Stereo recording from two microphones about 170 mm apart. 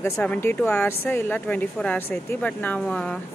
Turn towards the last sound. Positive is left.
turn(degrees=5)  # may be behind; listen again after turning